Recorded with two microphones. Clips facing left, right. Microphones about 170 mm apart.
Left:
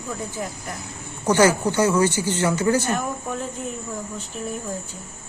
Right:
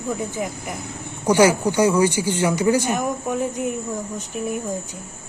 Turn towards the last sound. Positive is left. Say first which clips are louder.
# right 4 dB
turn(degrees=-15)  # may be behind; listen again after turning